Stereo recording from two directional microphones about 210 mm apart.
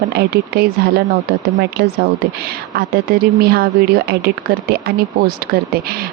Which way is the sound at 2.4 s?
45° right (ahead or behind).